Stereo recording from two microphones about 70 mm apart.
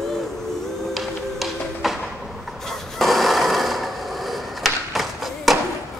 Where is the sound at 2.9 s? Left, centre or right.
Centre.